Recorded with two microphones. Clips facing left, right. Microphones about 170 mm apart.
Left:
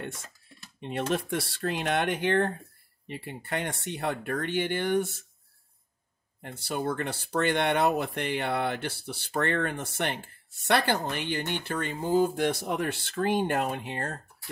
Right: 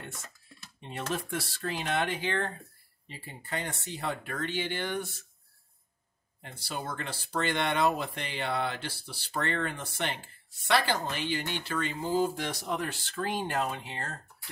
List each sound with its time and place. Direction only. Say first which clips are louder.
0.1 s a sound: left 1 dB; 30° left (ahead or behind)
0.7 s speech: left 6 dB; 65° left (ahead or behind)
6.6 s speech: left 7 dB; 60° left (ahead or behind)